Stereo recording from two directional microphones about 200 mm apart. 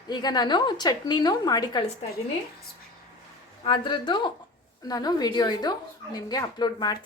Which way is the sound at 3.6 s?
25° left (ahead or behind).